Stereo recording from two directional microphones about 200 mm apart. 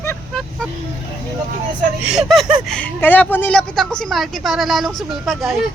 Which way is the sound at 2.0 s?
Centre (ahead or behind).